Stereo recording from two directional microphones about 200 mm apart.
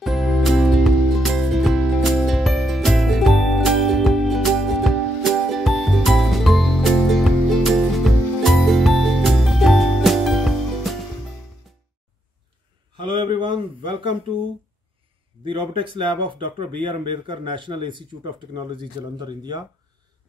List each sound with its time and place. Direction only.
0.0 s music: centre (ahead or behind)
13.0 s a sound: 25° right (ahead or behind)
15.4 s speech: 25° right (ahead or behind)